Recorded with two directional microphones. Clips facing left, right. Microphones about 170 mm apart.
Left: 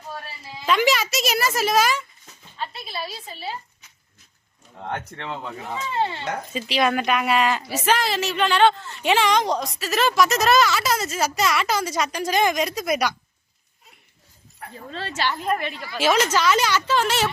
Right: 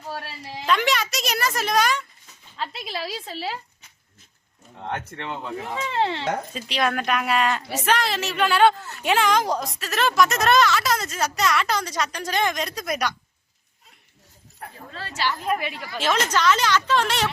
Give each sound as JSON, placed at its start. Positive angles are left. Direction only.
{"t": 0.1, "sound": "a sound", "side_deg": -75}
{"t": 0.7, "sound": "a sound", "side_deg": 5}
{"t": 2.6, "sound": "a woman's voice", "side_deg": -90}
{"t": 4.9, "sound": "speech", "side_deg": -15}
{"t": 5.9, "sound": "speech", "side_deg": -80}
{"t": 6.5, "sound": "a woman's voice", "side_deg": 0}
{"t": 14.9, "sound": "a woman's voice", "side_deg": 25}
{"t": 15.4, "sound": "a woman's voice", "side_deg": -5}
{"t": 16.0, "sound": "a woman's voice", "side_deg": 10}